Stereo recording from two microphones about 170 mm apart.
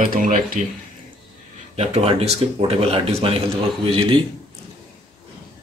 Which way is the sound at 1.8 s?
40° right (ahead or behind).